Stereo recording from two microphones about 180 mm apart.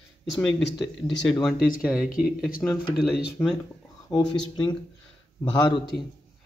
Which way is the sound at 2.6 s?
5° left (ahead or behind).